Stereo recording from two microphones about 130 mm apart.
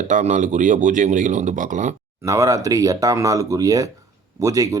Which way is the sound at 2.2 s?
25° right (ahead or behind).